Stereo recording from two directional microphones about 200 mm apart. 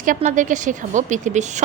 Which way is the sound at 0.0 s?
40° right (ahead or behind).